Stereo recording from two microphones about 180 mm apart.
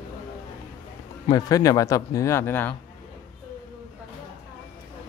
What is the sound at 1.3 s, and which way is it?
Speech, 20° left (ahead or behind).